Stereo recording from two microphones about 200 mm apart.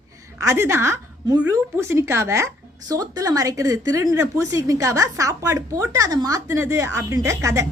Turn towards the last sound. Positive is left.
turn(degrees=-15)  # may be behind; listen again after turning